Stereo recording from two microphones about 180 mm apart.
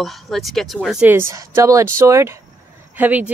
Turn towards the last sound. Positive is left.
turn(degrees=-10)  # may be behind; listen again after turning